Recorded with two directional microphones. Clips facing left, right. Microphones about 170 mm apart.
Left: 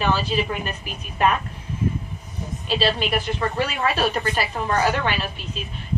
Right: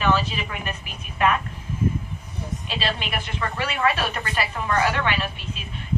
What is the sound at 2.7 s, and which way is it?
Speech, 35° left (ahead or behind).